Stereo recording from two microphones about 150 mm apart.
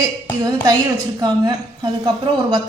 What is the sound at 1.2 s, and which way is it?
Speech, 25° right (ahead or behind).